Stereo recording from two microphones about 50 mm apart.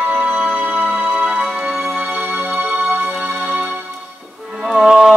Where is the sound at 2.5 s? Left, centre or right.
Right.